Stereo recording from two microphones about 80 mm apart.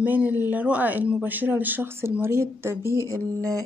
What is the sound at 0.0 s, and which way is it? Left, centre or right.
Speech, right.